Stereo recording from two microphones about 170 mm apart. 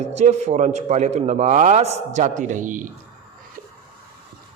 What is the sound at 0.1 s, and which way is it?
A man's voice, 40° right (ahead or behind).